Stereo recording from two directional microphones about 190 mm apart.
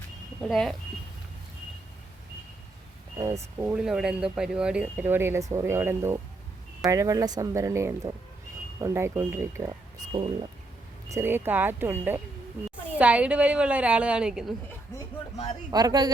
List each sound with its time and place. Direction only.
0.4 s speech: centre (ahead or behind)
3.2 s speech: 15° right (ahead or behind)
10.1 s speech: 25° right (ahead or behind)
11.1 s speech: 10° right (ahead or behind)
15.7 s speech: 20° right (ahead or behind)